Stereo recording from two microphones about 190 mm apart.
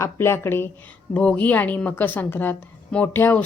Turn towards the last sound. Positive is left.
turn(degrees=10)  # may be behind; listen again after turning